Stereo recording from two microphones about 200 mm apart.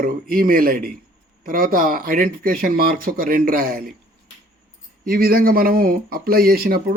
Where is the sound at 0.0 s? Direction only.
45° right (ahead or behind).